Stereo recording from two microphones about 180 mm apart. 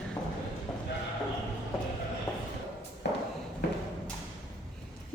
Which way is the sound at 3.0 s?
70° left (ahead or behind).